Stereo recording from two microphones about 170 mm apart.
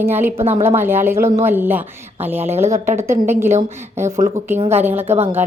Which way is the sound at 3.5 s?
40° right (ahead or behind).